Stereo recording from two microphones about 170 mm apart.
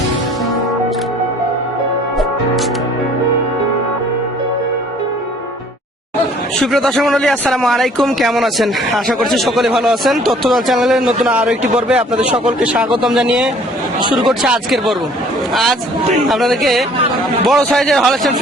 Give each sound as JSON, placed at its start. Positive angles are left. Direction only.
{"t": 6.6, "sound": "a man's voice", "side_deg": 0}
{"t": 14.0, "sound": "speech", "side_deg": -25}
{"t": 14.3, "sound": "speech", "side_deg": 0}